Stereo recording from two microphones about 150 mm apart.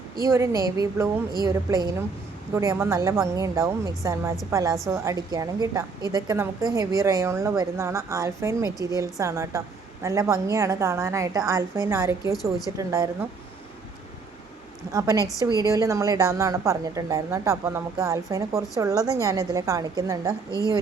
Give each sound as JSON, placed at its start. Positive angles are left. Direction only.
{"t": 0.2, "sound": "a woman's voice", "side_deg": -20}
{"t": 14.9, "sound": "a woman's voice", "side_deg": -25}